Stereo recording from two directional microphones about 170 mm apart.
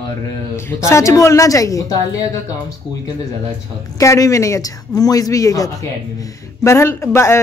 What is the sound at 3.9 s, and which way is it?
A man's voice, 20° left (ahead or behind).